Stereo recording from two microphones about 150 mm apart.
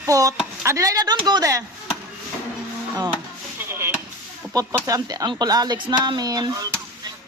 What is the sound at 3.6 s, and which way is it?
Chop, 15° right (ahead or behind).